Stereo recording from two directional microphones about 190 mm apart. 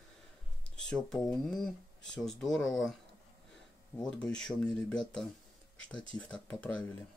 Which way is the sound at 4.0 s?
5° left (ahead or behind).